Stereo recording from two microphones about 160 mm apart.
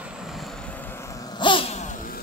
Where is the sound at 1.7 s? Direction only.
50° left (ahead or behind).